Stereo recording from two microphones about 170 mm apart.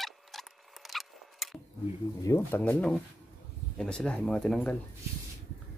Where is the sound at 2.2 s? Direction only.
15° left (ahead or behind).